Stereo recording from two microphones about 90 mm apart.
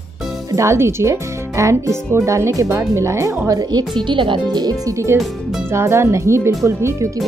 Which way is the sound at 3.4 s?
45° right (ahead or behind).